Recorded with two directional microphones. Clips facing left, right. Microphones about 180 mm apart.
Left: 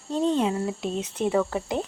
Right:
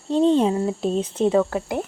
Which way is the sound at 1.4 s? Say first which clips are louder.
Right 3 dB; 10° right (ahead or behind).